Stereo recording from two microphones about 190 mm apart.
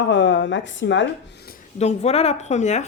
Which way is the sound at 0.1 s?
70° left (ahead or behind).